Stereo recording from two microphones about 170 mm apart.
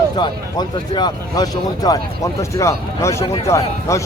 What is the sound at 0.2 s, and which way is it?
A man's voice, 25° left (ahead or behind).